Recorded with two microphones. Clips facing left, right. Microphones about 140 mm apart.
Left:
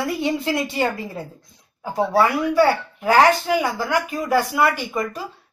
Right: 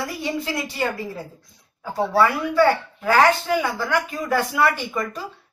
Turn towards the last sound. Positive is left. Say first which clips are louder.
# left 2 dB
turn(degrees=10)  # may be behind; listen again after turning